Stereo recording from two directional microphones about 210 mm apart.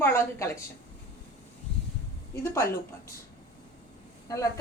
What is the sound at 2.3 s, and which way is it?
Speech, 10° left (ahead or behind).